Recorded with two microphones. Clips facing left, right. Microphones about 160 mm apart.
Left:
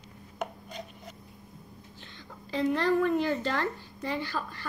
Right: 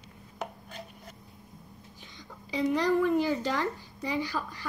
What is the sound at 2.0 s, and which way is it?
Whispering, 15° right (ahead or behind).